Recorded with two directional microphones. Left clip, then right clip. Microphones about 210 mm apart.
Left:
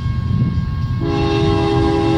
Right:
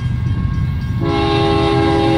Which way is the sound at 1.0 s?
20° left (ahead or behind).